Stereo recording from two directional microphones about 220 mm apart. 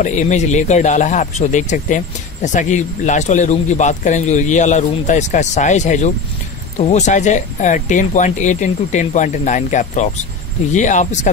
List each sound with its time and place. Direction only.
0.0 s speech: 35° left (ahead or behind)